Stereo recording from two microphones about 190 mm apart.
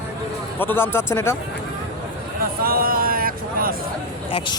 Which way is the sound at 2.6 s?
50° right (ahead or behind).